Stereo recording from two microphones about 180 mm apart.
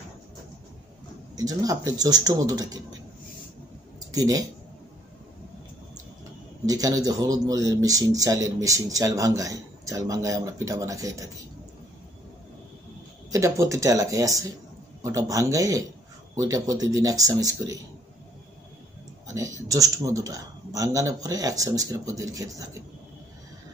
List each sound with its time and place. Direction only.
1.3 s a man's voice: 20° right (ahead or behind)
4.1 s speech: 20° right (ahead or behind)
6.6 s a man's voice: 20° right (ahead or behind)
13.3 s a man's voice: 15° right (ahead or behind)
19.2 s a man's voice: 15° right (ahead or behind)